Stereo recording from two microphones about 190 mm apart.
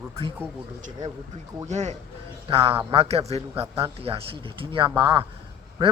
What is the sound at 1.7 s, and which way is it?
A man's voice, 40° right (ahead or behind).